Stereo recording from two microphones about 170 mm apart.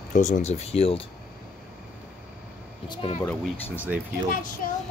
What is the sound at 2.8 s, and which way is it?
Speech, 25° left (ahead or behind).